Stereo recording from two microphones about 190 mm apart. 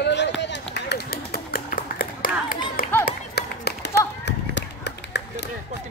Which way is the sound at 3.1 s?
60° left (ahead or behind).